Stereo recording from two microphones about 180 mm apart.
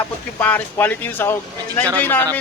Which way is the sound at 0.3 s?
10° left (ahead or behind).